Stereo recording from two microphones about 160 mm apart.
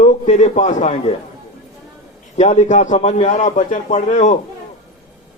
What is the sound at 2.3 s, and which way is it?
A man's voice, 45° left (ahead or behind).